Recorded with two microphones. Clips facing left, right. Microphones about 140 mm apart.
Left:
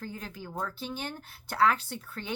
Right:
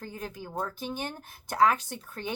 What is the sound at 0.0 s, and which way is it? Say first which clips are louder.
A woman's voice: right 1 dB; 20° right (ahead or behind).